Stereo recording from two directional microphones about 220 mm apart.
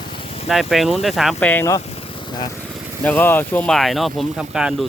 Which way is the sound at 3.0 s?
10° left (ahead or behind).